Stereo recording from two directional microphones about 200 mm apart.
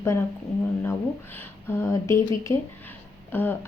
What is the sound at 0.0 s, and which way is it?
Speech, 15° left (ahead or behind).